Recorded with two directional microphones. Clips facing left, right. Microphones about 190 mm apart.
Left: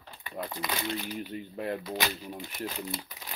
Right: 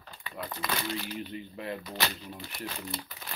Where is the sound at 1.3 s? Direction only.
45° left (ahead or behind).